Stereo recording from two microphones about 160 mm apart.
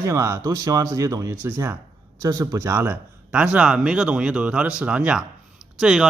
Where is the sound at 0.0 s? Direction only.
15° right (ahead or behind).